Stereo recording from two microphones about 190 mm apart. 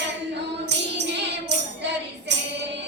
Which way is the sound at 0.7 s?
65° right (ahead or behind).